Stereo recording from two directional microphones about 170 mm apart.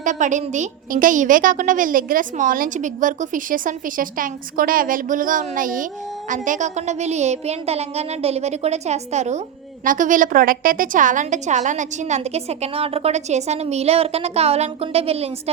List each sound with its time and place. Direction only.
0.0 s a woman's voice: 45° right (ahead or behind)